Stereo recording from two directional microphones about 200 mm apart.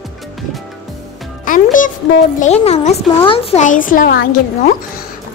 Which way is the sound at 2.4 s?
30° left (ahead or behind).